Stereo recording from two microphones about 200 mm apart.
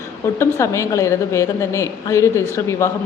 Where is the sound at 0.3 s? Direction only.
15° left (ahead or behind).